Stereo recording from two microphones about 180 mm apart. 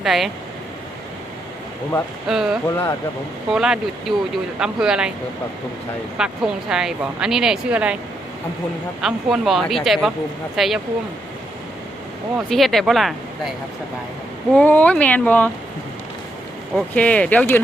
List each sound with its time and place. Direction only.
0.0 s speech: centre (ahead or behind)
2.2 s speech: centre (ahead or behind)
2.6 s speech: 20° left (ahead or behind)
3.5 s speech: 5° right (ahead or behind)
6.1 s speech: 5° right (ahead or behind)
9.0 s speech: centre (ahead or behind)
12.5 s speech: centre (ahead or behind)
14.5 s speech: 10° left (ahead or behind)
16.7 s speech: 5° left (ahead or behind)